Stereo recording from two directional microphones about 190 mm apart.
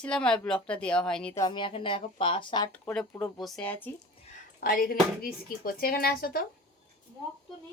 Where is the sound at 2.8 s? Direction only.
5° left (ahead or behind).